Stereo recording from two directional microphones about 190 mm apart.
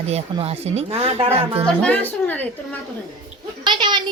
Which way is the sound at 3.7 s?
25° right (ahead or behind).